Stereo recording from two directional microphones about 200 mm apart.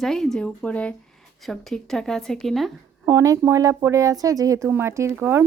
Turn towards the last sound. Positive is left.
turn(degrees=-10)  # may be behind; listen again after turning